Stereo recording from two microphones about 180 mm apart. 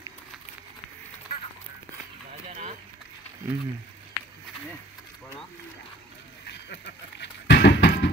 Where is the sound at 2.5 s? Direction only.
40° right (ahead or behind).